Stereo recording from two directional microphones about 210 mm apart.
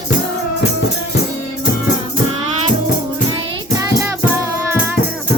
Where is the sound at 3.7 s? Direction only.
15° right (ahead or behind).